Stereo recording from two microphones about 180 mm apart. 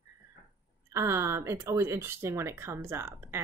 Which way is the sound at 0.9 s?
15° right (ahead or behind).